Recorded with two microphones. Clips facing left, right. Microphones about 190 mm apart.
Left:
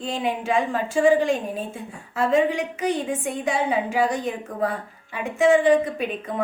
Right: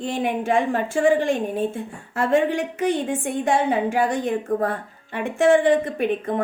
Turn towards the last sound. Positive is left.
turn(degrees=-55)  # may be behind; listen again after turning